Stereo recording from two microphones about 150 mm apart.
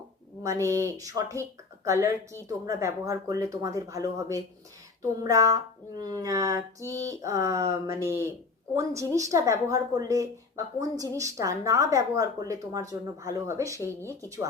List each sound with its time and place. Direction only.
0.4 s speech: 20° right (ahead or behind)